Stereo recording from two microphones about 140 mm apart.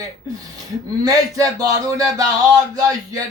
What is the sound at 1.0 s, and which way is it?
Speech, 25° right (ahead or behind).